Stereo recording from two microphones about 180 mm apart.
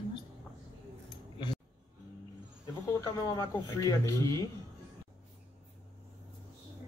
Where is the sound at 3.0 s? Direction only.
20° left (ahead or behind).